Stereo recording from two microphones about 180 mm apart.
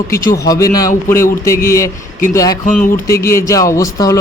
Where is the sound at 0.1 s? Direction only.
15° left (ahead or behind).